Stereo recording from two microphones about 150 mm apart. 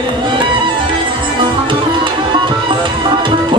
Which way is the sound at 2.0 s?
35° right (ahead or behind).